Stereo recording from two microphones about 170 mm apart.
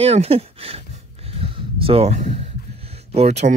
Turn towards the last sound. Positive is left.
turn(degrees=-40)  # may be behind; listen again after turning